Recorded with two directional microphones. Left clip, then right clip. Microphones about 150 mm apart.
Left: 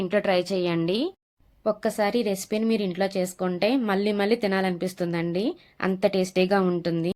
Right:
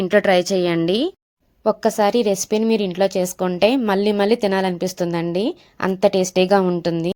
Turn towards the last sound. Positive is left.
turn(degrees=-35)  # may be behind; listen again after turning